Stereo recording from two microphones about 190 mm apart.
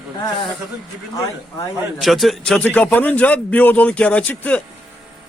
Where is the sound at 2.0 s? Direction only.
Centre (ahead or behind).